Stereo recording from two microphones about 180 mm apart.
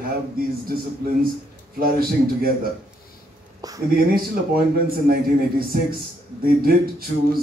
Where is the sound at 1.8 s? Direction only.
55° right (ahead or behind).